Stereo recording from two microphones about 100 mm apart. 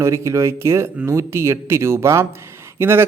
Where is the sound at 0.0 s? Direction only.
30° right (ahead or behind).